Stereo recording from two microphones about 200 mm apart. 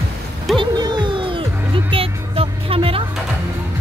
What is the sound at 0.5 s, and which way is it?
Music, 20° right (ahead or behind).